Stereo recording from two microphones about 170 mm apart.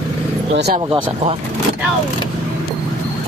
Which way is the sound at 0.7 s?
25° right (ahead or behind).